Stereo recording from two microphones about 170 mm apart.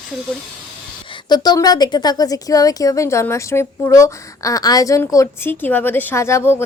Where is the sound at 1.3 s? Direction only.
25° left (ahead or behind).